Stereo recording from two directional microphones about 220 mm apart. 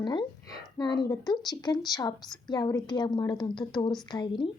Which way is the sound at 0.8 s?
20° left (ahead or behind).